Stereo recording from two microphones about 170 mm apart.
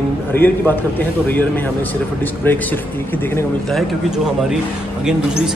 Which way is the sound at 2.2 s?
10° left (ahead or behind).